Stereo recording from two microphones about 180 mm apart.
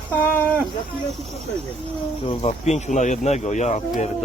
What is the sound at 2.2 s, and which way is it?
Speech, 35° left (ahead or behind).